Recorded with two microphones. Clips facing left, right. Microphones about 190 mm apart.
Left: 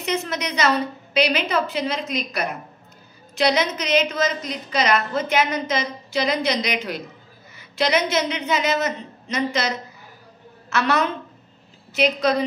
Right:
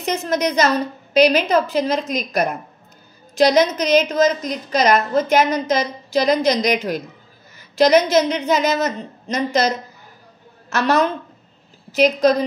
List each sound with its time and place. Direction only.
0.0 s a woman's voice: 40° right (ahead or behind)